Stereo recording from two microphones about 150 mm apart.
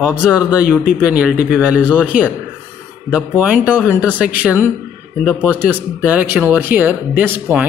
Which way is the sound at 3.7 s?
10° left (ahead or behind).